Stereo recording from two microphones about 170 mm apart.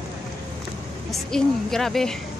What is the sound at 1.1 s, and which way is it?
A woman's voice, centre (ahead or behind).